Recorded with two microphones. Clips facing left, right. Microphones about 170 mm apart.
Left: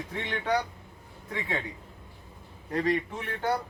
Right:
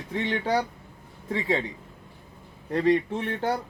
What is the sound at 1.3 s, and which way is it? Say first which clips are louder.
Speech: right 7 dB; 30° right (ahead or behind).